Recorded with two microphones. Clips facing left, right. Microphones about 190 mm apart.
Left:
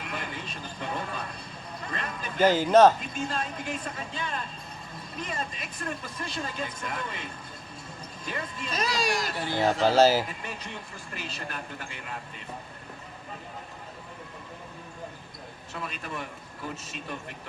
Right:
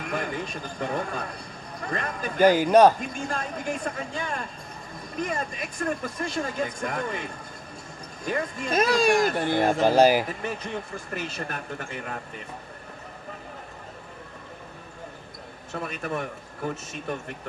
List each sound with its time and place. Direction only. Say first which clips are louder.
0.0 s speech: right 7 dB; 45° right (ahead or behind)
2.4 s speech: right 2 dB; 15° right (ahead or behind)
3.0 s speech: right 1 dB; 45° right (ahead or behind)
9.8 s speech: right 2 dB; 15° right (ahead or behind)
10.4 s speech: right 7 dB; 45° right (ahead or behind)
15.7 s speech: right 6 dB; 45° right (ahead or behind)